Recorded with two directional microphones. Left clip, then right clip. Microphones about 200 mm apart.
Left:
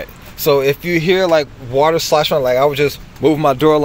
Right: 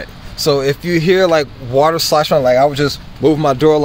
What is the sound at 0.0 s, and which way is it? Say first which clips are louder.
Speech: right 1 dB; centre (ahead or behind).